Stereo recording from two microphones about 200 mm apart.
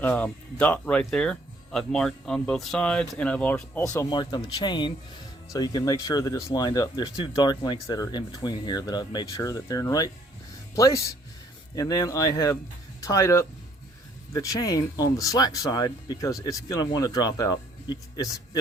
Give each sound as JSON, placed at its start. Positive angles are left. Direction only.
{"t": 0.0, "sound": "speech", "side_deg": 10}